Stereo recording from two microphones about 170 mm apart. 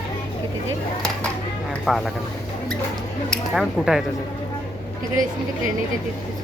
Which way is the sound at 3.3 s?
Centre (ahead or behind).